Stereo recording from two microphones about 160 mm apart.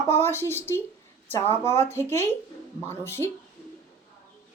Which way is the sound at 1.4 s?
40° right (ahead or behind).